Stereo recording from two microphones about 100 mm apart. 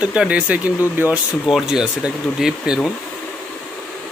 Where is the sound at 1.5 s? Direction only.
5° right (ahead or behind).